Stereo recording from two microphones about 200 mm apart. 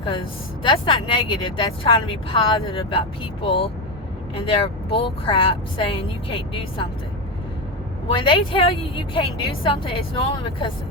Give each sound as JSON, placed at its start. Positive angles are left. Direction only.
{"t": 0.0, "sound": "a woman's voice", "side_deg": 25}
{"t": 8.0, "sound": "a woman's voice", "side_deg": 25}